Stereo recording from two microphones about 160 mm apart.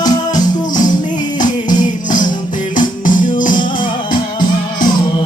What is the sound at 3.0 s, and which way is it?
Music, 55° left (ahead or behind).